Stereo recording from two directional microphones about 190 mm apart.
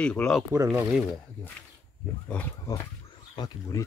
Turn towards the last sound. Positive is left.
turn(degrees=20)  # may be behind; listen again after turning